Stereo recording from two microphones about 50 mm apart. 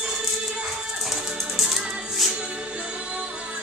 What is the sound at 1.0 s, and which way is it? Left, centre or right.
Music, centre.